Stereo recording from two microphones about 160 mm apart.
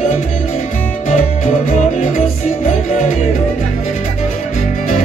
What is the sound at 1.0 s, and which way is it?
Music, 45° left (ahead or behind).